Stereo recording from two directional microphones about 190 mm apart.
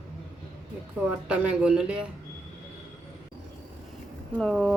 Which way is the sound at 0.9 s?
5° right (ahead or behind).